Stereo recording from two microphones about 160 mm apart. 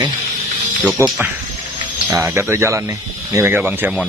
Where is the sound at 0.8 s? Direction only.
10° right (ahead or behind).